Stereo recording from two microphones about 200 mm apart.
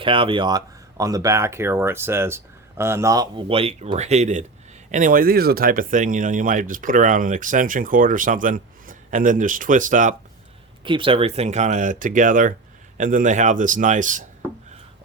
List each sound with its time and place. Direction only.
0.0 s speech: 25° right (ahead or behind)
10.8 s speech: 25° right (ahead or behind); by 14.3 s 40° right (ahead or behind)